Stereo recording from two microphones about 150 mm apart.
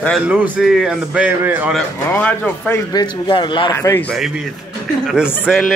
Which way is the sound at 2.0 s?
10° left (ahead or behind).